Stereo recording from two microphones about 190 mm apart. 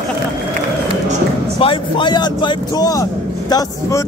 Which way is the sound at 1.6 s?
25° left (ahead or behind).